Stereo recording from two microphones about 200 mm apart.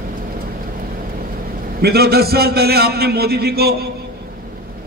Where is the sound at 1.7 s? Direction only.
50° right (ahead or behind).